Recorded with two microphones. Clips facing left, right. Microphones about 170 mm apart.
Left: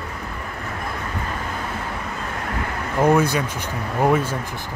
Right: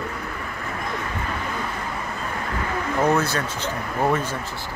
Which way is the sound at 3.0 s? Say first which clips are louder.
Left 4 dB; 10° left (ahead or behind).